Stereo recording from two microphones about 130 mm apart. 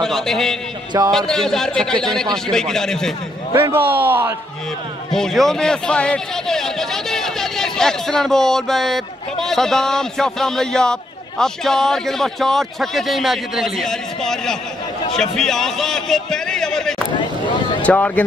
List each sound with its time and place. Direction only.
0.0 s a man's voice: 5° left (ahead or behind)
3.6 s a man's voice: 15° right (ahead or behind)
5.1 s a man's voice: centre (ahead or behind)